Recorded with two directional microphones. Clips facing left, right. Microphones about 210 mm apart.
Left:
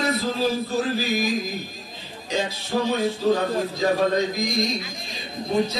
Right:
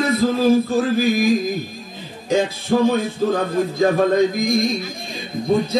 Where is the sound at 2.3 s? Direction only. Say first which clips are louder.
Right 8 dB; 50° right (ahead or behind).